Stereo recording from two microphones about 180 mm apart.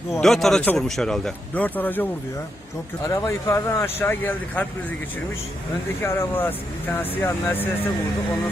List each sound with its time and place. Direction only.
0.1 s a man's voice: centre (ahead or behind)
6.0 s speech: 10° left (ahead or behind)